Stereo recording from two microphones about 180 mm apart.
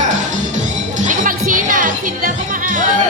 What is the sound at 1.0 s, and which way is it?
Music, 45° right (ahead or behind).